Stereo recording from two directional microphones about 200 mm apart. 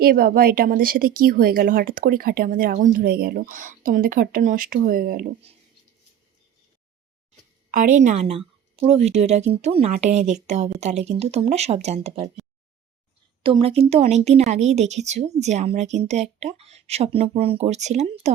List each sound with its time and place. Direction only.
0.0 s speech: 50° right (ahead or behind)
7.7 s speech: 40° right (ahead or behind)
13.4 s speech: 25° right (ahead or behind)